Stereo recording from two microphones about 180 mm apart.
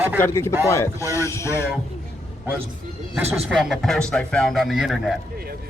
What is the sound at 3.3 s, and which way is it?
Speech, centre (ahead or behind).